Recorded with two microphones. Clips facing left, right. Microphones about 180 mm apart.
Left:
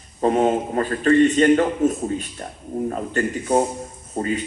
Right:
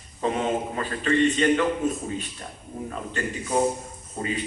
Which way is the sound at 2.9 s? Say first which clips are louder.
Left 4 dB; 45° left (ahead or behind).